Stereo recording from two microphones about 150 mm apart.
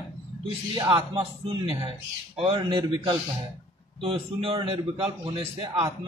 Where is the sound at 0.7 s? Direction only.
30° right (ahead or behind).